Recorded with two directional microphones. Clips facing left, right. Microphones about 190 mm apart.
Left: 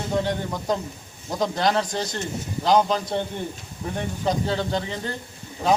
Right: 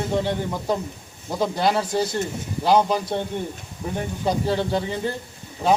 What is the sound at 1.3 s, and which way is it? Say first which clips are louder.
A man's voice: right 1 dB; 5° right (ahead or behind).